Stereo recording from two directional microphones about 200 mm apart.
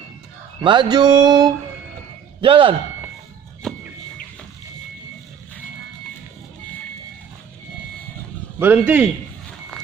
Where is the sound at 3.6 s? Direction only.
Centre (ahead or behind).